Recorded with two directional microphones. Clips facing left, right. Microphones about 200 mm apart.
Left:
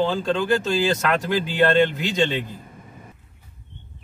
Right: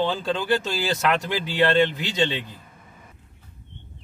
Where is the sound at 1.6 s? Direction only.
50° left (ahead or behind).